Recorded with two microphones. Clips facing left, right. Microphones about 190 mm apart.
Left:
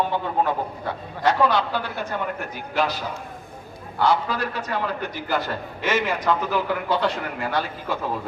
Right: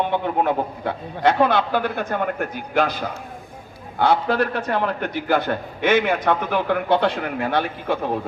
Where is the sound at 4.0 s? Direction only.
55° right (ahead or behind).